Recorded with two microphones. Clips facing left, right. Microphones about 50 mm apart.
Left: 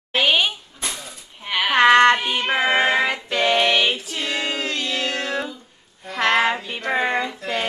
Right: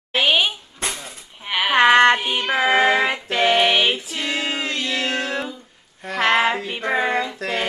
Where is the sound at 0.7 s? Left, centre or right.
Right.